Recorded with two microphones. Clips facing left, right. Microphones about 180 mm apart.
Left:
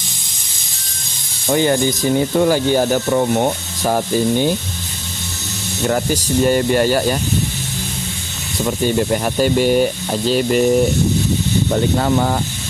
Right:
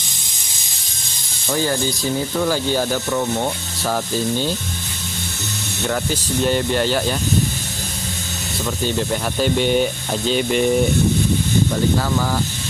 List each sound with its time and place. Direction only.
1.5 s speech: 20° left (ahead or behind)
3.1 s speech: 30° left (ahead or behind)
5.9 s speech: 10° left (ahead or behind)
8.6 s speech: 10° left (ahead or behind)
12.0 s speech: 30° left (ahead or behind)